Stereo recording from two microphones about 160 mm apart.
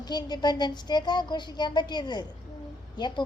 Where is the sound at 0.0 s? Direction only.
25° left (ahead or behind).